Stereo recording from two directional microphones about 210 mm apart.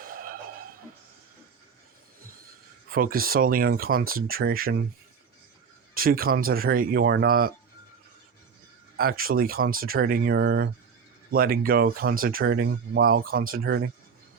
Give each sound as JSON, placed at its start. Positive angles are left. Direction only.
{"t": 0.0, "sound": "a sound", "side_deg": -40}
{"t": 2.9, "sound": "speech", "side_deg": -45}
{"t": 5.9, "sound": "speech", "side_deg": -45}
{"t": 9.0, "sound": "speech", "side_deg": -45}